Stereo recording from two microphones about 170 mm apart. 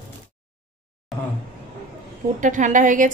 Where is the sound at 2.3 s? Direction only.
50° right (ahead or behind).